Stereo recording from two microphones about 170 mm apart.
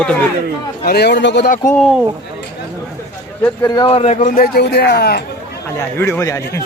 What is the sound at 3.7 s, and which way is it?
A man's voice, 30° left (ahead or behind).